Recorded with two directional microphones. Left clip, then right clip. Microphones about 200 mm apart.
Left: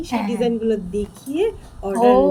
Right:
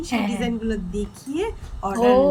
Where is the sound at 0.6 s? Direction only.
40° right (ahead or behind).